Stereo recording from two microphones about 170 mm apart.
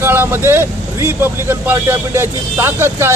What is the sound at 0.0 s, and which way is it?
Speech, 15° right (ahead or behind).